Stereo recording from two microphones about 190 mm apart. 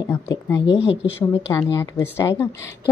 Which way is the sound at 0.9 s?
70° left (ahead or behind).